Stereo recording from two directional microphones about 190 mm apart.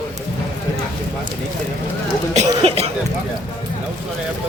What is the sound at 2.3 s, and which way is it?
Cough, 35° right (ahead or behind).